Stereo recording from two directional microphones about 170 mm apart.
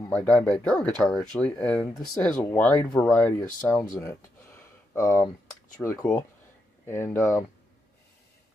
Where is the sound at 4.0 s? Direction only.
15° left (ahead or behind).